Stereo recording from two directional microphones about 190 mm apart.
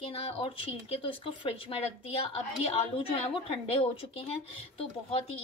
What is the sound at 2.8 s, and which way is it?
A woman's voice, 30° left (ahead or behind).